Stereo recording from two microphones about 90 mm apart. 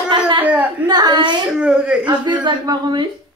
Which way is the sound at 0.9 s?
55° right (ahead or behind).